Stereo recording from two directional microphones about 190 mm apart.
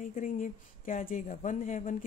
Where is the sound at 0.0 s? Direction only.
45° left (ahead or behind).